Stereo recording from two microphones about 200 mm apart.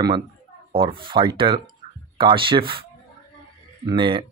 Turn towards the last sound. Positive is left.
turn(degrees=-25)  # may be behind; listen again after turning